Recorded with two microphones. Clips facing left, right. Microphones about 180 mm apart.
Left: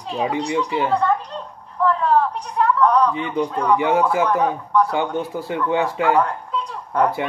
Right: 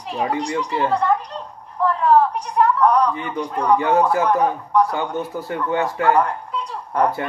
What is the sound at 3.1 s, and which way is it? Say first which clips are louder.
Speech: left 3 dB; 20° left (ahead or behind).